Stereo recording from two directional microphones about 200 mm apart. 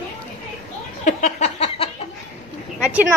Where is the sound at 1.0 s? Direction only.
35° left (ahead or behind).